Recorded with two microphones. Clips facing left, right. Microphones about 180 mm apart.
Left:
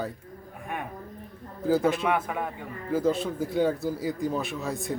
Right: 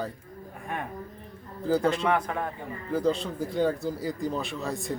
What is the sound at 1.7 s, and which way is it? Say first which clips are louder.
Speech: even; 5° left (ahead or behind).